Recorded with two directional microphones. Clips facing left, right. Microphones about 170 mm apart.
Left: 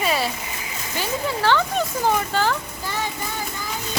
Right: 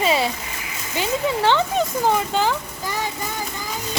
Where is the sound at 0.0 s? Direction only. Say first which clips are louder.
Right 3 dB; 25° right (ahead or behind).